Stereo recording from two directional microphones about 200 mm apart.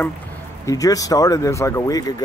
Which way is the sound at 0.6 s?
15° left (ahead or behind).